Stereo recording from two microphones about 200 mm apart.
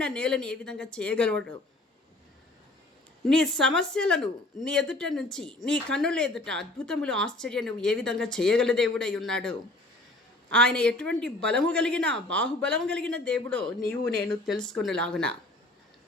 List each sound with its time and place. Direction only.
0.0 s speech: 5° left (ahead or behind)
3.2 s speech: 5° left (ahead or behind)